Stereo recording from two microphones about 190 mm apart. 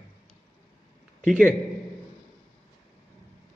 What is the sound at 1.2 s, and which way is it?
Speech, 5° left (ahead or behind).